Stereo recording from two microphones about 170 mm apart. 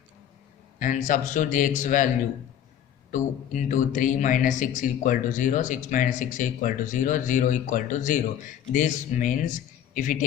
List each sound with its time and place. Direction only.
0.8 s a man's voice: 50° left (ahead or behind)
3.1 s a man's voice: 50° left (ahead or behind)